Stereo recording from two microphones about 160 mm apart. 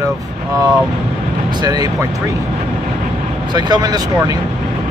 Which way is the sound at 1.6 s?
25° right (ahead or behind).